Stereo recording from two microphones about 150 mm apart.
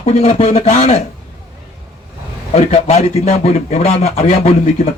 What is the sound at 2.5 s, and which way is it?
A man's voice, 40° left (ahead or behind).